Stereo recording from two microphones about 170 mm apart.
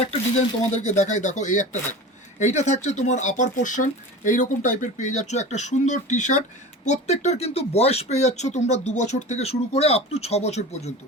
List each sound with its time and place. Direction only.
0.0 s speech: 40° left (ahead or behind)